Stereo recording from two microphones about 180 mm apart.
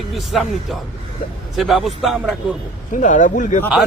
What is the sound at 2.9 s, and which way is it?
Speech, 45° left (ahead or behind).